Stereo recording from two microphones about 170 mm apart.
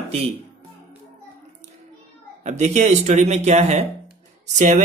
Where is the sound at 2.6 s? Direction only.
45° right (ahead or behind).